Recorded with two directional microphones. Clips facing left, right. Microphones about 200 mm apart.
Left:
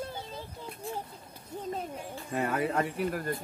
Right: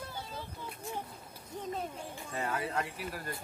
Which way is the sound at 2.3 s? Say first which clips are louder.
Left 6 dB; 60° left (ahead or behind).